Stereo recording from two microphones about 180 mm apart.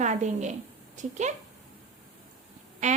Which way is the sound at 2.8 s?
40° right (ahead or behind).